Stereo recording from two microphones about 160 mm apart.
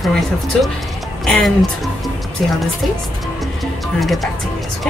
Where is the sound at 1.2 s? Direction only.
5° left (ahead or behind).